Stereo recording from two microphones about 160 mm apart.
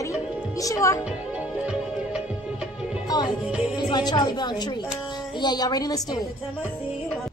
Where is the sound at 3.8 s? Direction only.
25° left (ahead or behind).